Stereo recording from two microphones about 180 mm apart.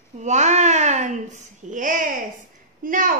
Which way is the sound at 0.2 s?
40° right (ahead or behind).